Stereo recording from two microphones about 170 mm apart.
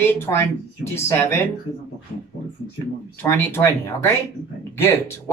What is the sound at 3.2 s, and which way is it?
Speech, 10° left (ahead or behind).